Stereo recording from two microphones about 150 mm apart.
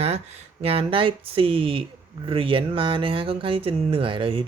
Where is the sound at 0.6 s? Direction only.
40° right (ahead or behind).